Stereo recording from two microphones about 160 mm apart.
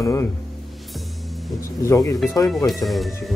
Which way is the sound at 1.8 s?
20° left (ahead or behind).